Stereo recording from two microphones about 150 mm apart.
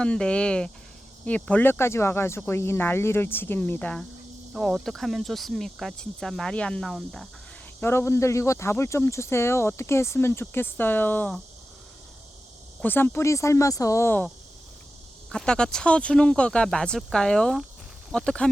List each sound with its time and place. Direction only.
0.0 s speech: 5° left (ahead or behind)
7.8 s speech: 15° left (ahead or behind)
12.8 s speech: 15° left (ahead or behind)
15.3 s speech: 5° left (ahead or behind)